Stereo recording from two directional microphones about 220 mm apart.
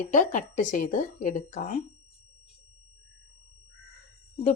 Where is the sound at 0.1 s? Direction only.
35° left (ahead or behind).